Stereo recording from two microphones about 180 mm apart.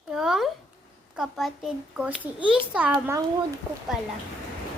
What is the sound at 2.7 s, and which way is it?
Speech, 5° right (ahead or behind).